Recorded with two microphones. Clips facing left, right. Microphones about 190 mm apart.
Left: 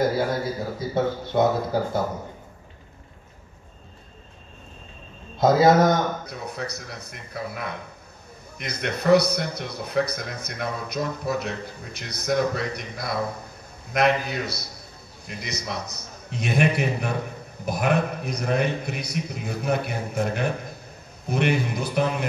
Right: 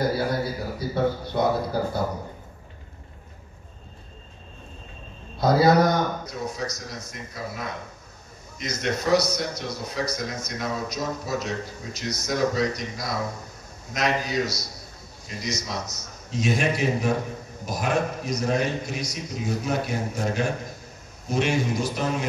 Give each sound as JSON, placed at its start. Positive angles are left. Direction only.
{"t": 0.7, "sound": "speech", "side_deg": 20}
{"t": 5.4, "sound": "speech", "side_deg": 25}
{"t": 6.2, "sound": "a man's voice", "side_deg": 60}